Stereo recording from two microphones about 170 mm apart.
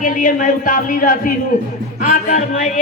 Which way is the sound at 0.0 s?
50° left (ahead or behind).